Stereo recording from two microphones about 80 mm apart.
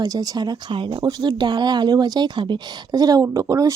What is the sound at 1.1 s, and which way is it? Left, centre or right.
Speech, right.